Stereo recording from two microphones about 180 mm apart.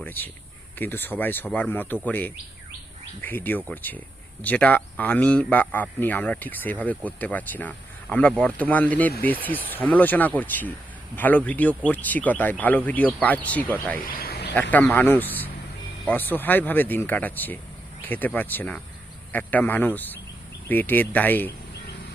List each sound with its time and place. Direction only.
0.0 s a man's voice: 10° left (ahead or behind)
14.1 s a sound: 60° left (ahead or behind)
14.5 s a man's voice: 10° left (ahead or behind)